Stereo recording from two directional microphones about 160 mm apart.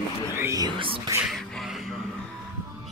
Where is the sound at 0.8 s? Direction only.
35° right (ahead or behind).